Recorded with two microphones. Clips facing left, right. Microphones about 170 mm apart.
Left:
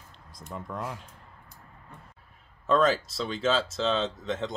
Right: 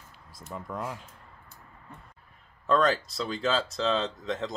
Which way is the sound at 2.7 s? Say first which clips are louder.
Left 1 dB; centre (ahead or behind).